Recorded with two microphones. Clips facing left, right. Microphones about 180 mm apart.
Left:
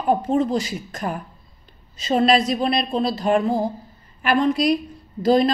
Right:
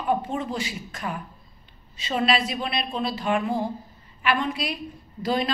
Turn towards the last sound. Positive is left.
turn(degrees=40)  # may be behind; listen again after turning